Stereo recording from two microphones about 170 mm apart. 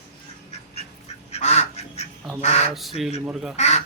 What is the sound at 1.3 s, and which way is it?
Duck, 40° left (ahead or behind).